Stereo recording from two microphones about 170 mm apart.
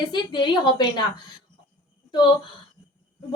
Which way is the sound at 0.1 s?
25° left (ahead or behind).